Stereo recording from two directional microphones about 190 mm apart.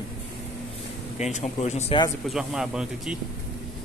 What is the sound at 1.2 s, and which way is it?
Speech, 35° left (ahead or behind).